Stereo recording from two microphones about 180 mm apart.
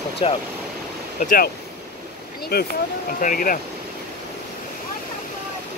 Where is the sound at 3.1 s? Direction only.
50° left (ahead or behind).